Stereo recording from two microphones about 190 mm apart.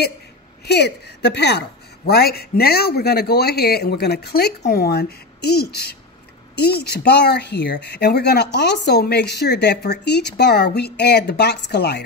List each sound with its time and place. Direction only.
0.7 s speech: 60° left (ahead or behind)